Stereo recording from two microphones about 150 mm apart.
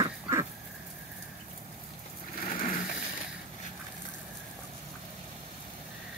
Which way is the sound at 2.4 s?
70° left (ahead or behind).